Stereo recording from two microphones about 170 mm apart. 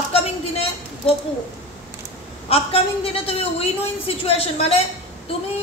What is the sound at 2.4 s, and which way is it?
A woman's voice, 35° left (ahead or behind).